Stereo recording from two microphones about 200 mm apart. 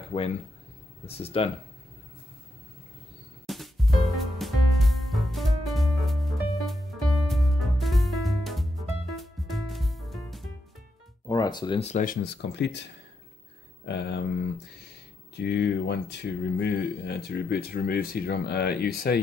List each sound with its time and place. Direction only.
0.1 s speech: 35° left (ahead or behind)
3.4 s music: centre (ahead or behind)
11.2 s speech: 20° left (ahead or behind); by 12.3 s 40° left (ahead or behind)
12.4 s speech: 60° left (ahead or behind)
13.8 s speech: 60° left (ahead or behind)